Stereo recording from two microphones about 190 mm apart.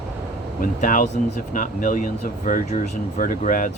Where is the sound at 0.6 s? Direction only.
45° left (ahead or behind).